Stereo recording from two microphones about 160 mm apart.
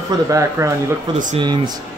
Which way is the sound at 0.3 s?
20° right (ahead or behind).